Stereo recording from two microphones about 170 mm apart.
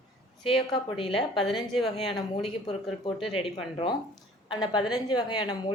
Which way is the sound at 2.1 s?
35° left (ahead or behind).